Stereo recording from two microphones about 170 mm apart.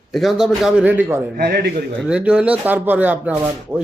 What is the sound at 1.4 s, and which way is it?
Speech, 70° right (ahead or behind).